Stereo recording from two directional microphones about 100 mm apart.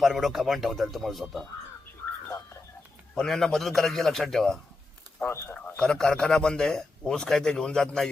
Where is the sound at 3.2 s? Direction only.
5° left (ahead or behind).